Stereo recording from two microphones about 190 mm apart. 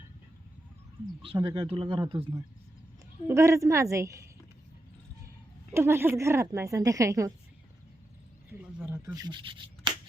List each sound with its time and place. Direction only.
1.5 s speech: 30° right (ahead or behind)
3.2 s a woman's voice: 15° right (ahead or behind)
5.7 s a woman's voice: 15° right (ahead or behind)
8.4 s a sound: 5° right (ahead or behind)
9.0 s rub: 20° right (ahead or behind)